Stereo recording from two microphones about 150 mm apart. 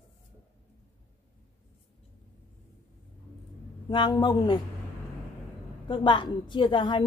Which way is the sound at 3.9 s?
35° left (ahead or behind).